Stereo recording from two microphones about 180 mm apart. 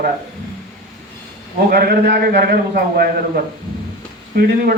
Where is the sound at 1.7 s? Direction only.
60° right (ahead or behind).